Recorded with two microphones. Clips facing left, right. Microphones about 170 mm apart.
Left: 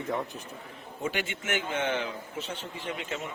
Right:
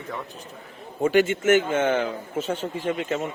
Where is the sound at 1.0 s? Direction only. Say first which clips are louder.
Right 14 dB; 45° right (ahead or behind).